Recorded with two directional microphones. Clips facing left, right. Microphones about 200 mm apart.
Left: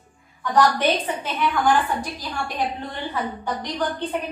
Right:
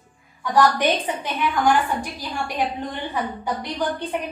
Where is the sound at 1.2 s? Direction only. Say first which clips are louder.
Even; 15° right (ahead or behind).